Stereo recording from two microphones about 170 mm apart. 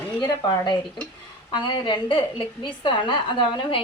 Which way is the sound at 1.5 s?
25° left (ahead or behind).